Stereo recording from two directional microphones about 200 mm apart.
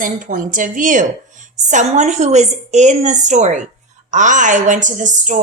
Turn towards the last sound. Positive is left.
turn(degrees=-40)  # may be behind; listen again after turning